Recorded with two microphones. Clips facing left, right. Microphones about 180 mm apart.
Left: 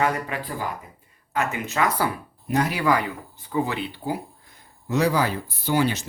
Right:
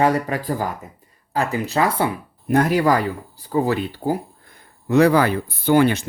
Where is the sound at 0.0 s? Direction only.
35° right (ahead or behind).